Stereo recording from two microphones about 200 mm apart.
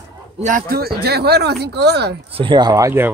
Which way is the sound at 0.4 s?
40° right (ahead or behind).